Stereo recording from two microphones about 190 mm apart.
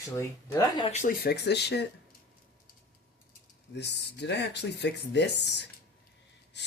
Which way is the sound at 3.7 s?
65° left (ahead or behind).